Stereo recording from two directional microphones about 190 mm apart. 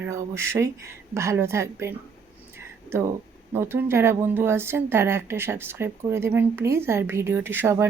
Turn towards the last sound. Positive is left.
turn(degrees=-10)  # may be behind; listen again after turning